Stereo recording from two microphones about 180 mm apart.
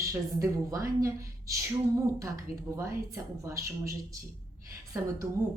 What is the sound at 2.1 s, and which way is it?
A woman's voice, 15° right (ahead or behind).